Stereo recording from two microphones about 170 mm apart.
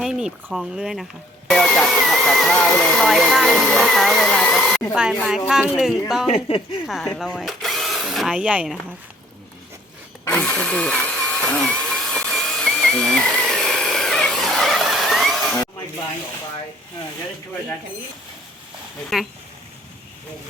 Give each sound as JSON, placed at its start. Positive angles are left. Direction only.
{"t": 0.0, "sound": "speech", "side_deg": -5}
{"t": 6.3, "sound": "speech", "side_deg": 30}
{"t": 6.8, "sound": "speech", "side_deg": 0}
{"t": 10.2, "sound": "drill", "side_deg": 5}
{"t": 19.1, "sound": "speech", "side_deg": 0}